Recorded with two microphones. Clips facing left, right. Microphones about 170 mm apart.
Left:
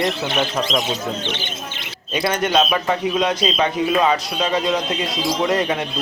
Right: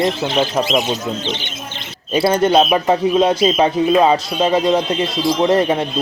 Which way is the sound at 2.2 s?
30° right (ahead or behind).